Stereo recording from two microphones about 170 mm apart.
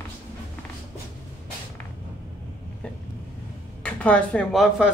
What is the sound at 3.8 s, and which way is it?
Speech, 5° left (ahead or behind).